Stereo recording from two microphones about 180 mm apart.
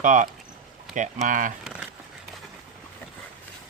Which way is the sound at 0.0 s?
45° right (ahead or behind).